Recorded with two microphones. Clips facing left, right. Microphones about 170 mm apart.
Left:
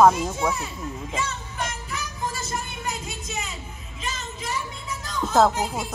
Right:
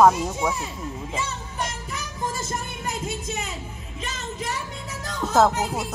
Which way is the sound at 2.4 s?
50° right (ahead or behind).